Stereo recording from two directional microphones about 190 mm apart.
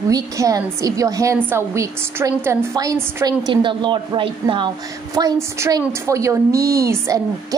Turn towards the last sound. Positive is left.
turn(degrees=-15)  # may be behind; listen again after turning